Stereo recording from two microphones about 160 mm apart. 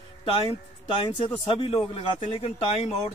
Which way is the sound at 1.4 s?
35° left (ahead or behind).